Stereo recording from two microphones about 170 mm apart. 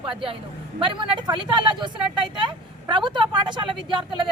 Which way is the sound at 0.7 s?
30° right (ahead or behind).